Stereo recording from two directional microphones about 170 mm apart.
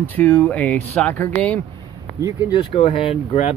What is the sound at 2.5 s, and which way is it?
Speech, 30° left (ahead or behind).